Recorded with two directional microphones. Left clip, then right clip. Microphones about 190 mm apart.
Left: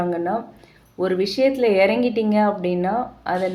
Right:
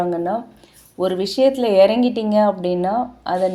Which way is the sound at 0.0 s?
30° right (ahead or behind).